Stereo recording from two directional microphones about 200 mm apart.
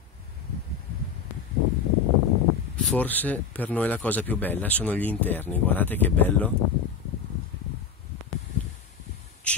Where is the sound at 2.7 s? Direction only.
5° left (ahead or behind).